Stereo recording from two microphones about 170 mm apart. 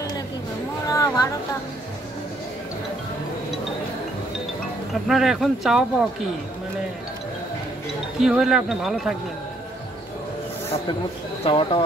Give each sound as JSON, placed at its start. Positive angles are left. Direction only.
{"t": 0.8, "sound": "a sound", "side_deg": 20}
{"t": 5.0, "sound": "speech", "side_deg": 0}
{"t": 8.2, "sound": "speech", "side_deg": -5}
{"t": 11.4, "sound": "speech", "side_deg": 30}